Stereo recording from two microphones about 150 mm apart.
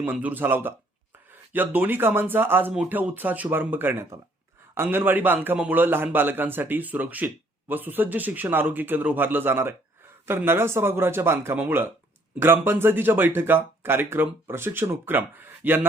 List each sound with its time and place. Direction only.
0.0 s speech: 10° right (ahead or behind)